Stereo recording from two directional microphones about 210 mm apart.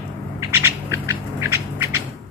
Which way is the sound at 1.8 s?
10° right (ahead or behind).